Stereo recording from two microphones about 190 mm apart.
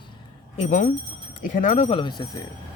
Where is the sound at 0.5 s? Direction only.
40° left (ahead or behind).